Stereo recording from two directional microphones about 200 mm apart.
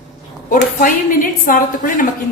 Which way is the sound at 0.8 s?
45° left (ahead or behind).